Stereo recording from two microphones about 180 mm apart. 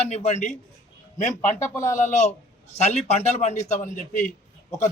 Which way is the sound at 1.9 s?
40° left (ahead or behind).